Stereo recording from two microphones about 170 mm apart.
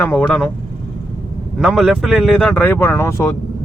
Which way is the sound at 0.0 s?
5° left (ahead or behind).